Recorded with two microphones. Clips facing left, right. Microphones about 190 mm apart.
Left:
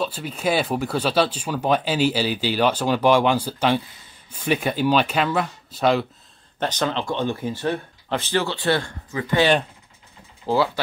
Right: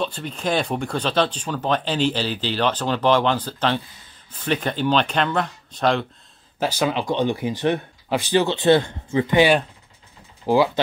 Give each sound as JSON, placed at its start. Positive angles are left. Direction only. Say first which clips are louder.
{"t": 0.0, "sound": "speech", "louder": "left 1 dB", "side_deg": 5}
{"t": 6.6, "sound": "speech", "louder": "right 2 dB", "side_deg": -10}